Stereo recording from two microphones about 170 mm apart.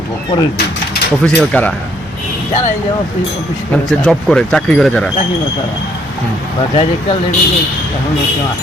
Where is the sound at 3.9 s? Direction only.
5° left (ahead or behind).